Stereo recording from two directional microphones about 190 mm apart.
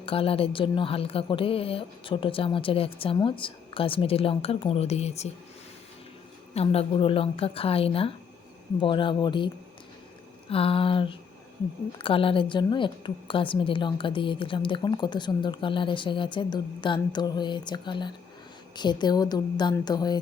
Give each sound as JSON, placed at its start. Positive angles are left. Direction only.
{"t": 0.0, "sound": "a woman's voice", "side_deg": 30}
{"t": 6.5, "sound": "a woman's voice", "side_deg": 30}
{"t": 10.5, "sound": "a woman's voice", "side_deg": 30}